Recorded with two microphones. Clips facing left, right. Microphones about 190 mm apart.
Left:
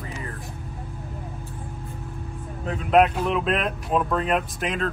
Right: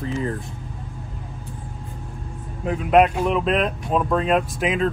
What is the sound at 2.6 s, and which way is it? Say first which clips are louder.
Speech: right 2 dB; 5° right (ahead or behind).